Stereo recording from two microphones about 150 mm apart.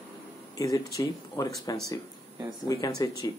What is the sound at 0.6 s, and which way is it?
Speech, 20° left (ahead or behind).